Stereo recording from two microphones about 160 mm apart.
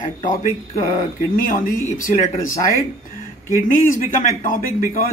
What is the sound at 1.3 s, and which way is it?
Speech, 65° left (ahead or behind).